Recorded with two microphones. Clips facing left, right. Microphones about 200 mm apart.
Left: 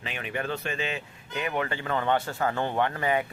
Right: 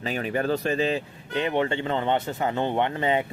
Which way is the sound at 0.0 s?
40° right (ahead or behind).